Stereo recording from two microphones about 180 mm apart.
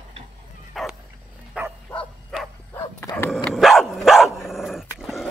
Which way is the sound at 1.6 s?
5° right (ahead or behind).